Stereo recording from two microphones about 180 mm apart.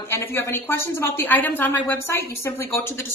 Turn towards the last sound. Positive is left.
turn(degrees=15)  # may be behind; listen again after turning